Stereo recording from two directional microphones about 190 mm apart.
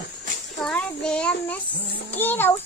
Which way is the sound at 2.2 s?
10° left (ahead or behind).